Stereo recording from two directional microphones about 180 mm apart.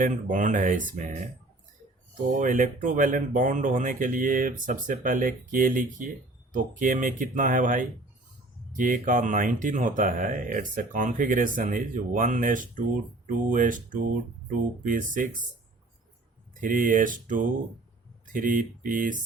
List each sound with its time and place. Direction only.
0.0 s speech: 45° right (ahead or behind)
2.3 s speech: 45° right (ahead or behind)
16.6 s speech: 50° right (ahead or behind)